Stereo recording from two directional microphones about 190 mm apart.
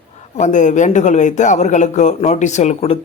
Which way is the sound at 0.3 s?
40° left (ahead or behind).